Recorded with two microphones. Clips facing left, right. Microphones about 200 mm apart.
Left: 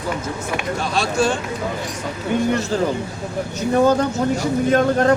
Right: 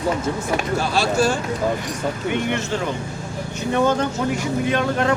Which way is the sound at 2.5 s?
35° left (ahead or behind).